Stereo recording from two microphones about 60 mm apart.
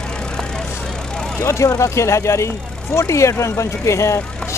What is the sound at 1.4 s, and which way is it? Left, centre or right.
Speech, left.